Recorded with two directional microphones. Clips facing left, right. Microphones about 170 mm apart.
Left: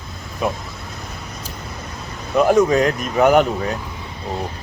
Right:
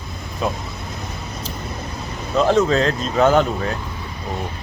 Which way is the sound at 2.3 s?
15° left (ahead or behind).